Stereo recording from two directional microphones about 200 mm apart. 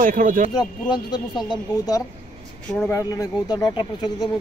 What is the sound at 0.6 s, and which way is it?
Speech, 20° left (ahead or behind).